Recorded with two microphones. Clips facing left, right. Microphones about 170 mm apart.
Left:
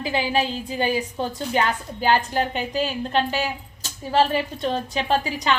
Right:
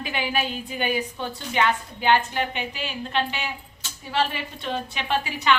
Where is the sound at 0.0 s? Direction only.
30° left (ahead or behind).